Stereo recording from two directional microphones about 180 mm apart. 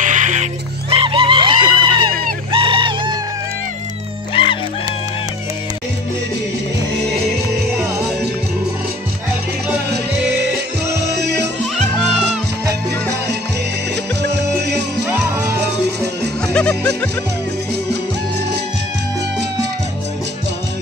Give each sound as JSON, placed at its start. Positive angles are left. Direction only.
{"t": 0.0, "sound": "music", "side_deg": -45}
{"t": 2.5, "sound": "a sound", "side_deg": -30}
{"t": 4.3, "sound": "music", "side_deg": 30}
{"t": 15.0, "sound": "music", "side_deg": -5}
{"t": 16.5, "sound": "music", "side_deg": 5}